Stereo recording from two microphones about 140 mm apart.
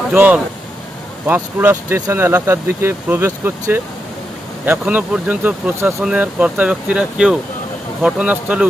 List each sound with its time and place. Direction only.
0.1 s speech: 10° right (ahead or behind)